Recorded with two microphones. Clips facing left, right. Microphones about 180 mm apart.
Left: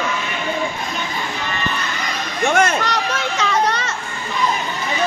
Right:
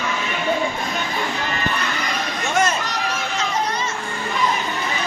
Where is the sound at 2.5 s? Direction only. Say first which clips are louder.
Left 2 dB; 65° left (ahead or behind).